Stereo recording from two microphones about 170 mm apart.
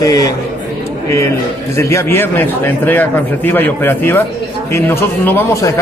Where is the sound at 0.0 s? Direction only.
20° left (ahead or behind).